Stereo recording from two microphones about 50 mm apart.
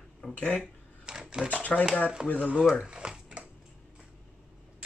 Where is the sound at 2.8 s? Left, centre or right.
Centre.